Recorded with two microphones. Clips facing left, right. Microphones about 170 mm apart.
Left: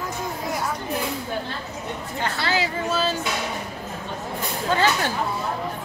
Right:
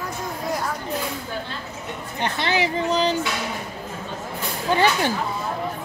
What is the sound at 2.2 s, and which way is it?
Speech, 20° right (ahead or behind).